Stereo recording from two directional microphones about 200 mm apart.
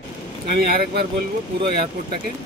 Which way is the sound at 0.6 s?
50° right (ahead or behind).